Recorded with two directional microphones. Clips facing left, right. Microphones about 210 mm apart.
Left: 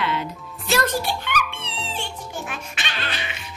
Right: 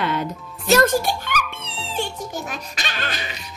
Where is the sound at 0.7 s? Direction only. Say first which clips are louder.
Right 6 dB; 45° right (ahead or behind).